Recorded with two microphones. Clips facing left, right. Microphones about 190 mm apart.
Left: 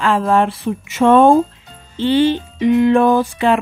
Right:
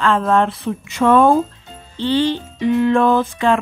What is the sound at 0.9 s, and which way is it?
Speech, 25° left (ahead or behind).